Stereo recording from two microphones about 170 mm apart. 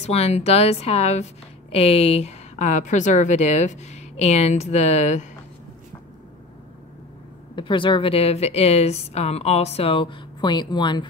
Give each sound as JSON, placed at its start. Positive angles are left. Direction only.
{"t": 0.0, "sound": "a woman's voice", "side_deg": 40}
{"t": 7.5, "sound": "a woman's voice", "side_deg": 30}